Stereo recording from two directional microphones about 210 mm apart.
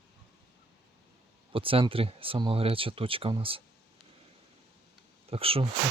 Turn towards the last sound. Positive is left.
turn(degrees=-25)  # may be behind; listen again after turning